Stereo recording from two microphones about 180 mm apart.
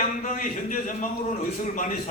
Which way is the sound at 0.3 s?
45° left (ahead or behind).